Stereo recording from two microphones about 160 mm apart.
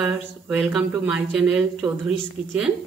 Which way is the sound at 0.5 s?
5° right (ahead or behind).